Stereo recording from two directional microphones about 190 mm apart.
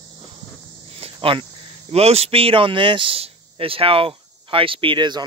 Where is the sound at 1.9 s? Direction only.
35° right (ahead or behind).